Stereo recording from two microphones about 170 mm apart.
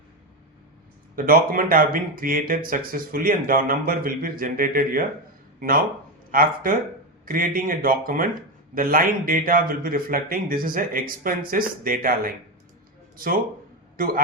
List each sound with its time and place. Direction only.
1.1 s a man's voice: 60° right (ahead or behind)